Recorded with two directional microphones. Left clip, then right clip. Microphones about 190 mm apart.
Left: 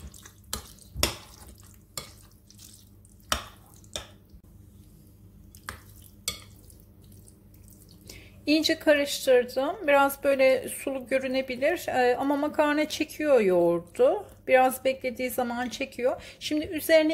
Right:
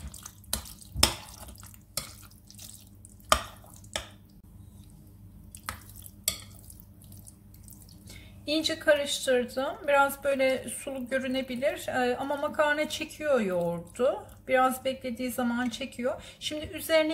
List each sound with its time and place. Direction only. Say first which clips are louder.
8.5 s a woman's voice: left 3 dB; 35° left (ahead or behind)